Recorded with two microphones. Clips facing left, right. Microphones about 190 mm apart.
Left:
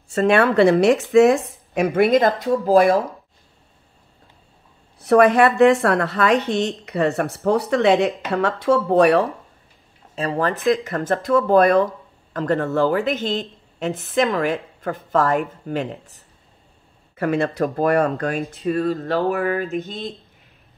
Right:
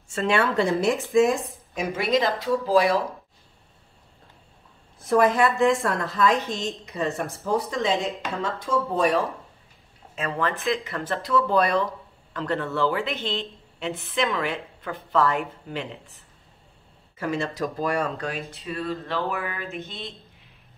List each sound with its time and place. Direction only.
0.1 s speech: 45° left (ahead or behind)
0.4 s a woman's voice: 65° left (ahead or behind); by 3.0 s 50° left (ahead or behind)
4.9 s a woman's voice: 70° left (ahead or behind)
10.1 s speech: 35° left (ahead or behind)
17.2 s a woman's voice: 60° left (ahead or behind); by 20.2 s 40° left (ahead or behind)